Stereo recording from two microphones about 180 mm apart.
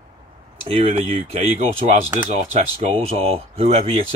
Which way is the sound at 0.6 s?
35° right (ahead or behind).